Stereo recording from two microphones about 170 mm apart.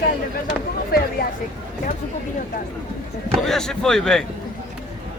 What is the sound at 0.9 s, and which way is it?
Speech, 60° left (ahead or behind).